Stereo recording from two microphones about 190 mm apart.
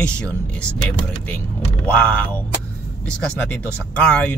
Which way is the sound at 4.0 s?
5° left (ahead or behind).